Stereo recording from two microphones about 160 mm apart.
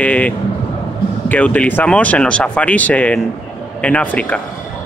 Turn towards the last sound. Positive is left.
turn(degrees=10)  # may be behind; listen again after turning